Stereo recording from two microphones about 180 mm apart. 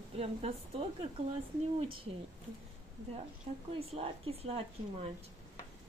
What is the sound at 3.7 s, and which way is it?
Speech, 35° right (ahead or behind).